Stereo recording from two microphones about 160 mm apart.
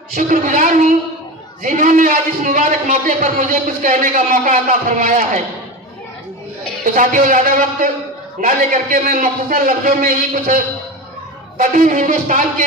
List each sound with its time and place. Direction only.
0.1 s a man's voice: 55° right (ahead or behind)
6.8 s a man's voice: 55° right (ahead or behind)